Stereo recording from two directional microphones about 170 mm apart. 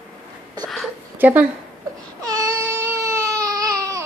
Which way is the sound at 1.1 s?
10° right (ahead or behind).